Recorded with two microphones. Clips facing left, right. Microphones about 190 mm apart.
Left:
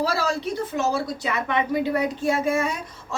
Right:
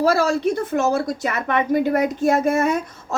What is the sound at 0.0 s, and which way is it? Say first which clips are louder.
A woman's voice: right 7 dB; 50° right (ahead or behind).